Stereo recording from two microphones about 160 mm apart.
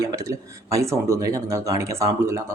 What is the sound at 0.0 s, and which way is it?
Speech, 20° right (ahead or behind).